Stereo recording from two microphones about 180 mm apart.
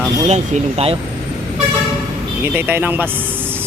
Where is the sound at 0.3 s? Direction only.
35° right (ahead or behind).